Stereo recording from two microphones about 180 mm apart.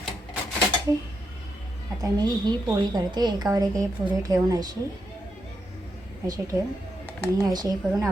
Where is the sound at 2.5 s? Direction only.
25° right (ahead or behind).